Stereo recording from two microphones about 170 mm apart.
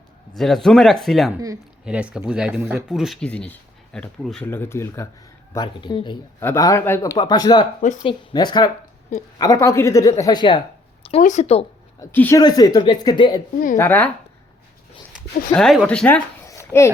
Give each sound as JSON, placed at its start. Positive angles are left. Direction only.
{"t": 0.3, "sound": "speech", "side_deg": 0}
{"t": 4.4, "sound": "speech", "side_deg": 15}
{"t": 5.5, "sound": "speech", "side_deg": 25}
{"t": 6.4, "sound": "speech", "side_deg": 15}
{"t": 11.2, "sound": "speech", "side_deg": 45}
{"t": 11.9, "sound": "speech", "side_deg": 15}
{"t": 13.7, "sound": "speech", "side_deg": 15}
{"t": 15.5, "sound": "speech", "side_deg": 0}
{"t": 16.5, "sound": "a sound", "side_deg": 15}